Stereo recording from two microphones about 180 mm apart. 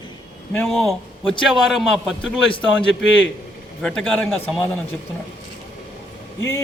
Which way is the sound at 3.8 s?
5° left (ahead or behind).